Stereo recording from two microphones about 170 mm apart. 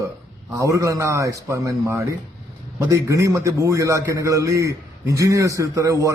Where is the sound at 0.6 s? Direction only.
20° right (ahead or behind).